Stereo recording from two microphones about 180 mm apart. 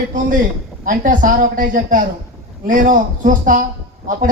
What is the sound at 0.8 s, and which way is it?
A man's voice, 45° right (ahead or behind).